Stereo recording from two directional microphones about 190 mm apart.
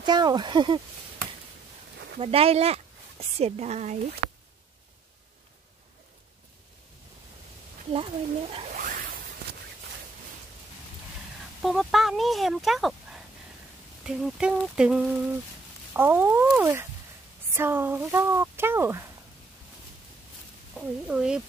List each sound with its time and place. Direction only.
0.0 s speech: 20° right (ahead or behind)
2.1 s speech: 30° right (ahead or behind)
7.9 s speech: 30° right (ahead or behind)
11.6 s speech: centre (ahead or behind)
20.7 s speech: 5° right (ahead or behind)